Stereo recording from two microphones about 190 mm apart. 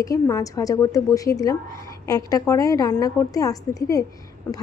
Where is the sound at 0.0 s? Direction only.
20° left (ahead or behind).